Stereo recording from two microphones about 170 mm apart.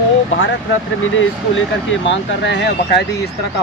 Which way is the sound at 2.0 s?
90° left.